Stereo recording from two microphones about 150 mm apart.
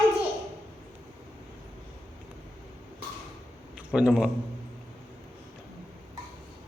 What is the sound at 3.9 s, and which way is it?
Speech, 5° right (ahead or behind).